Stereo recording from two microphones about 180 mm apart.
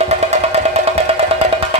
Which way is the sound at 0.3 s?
35° right (ahead or behind).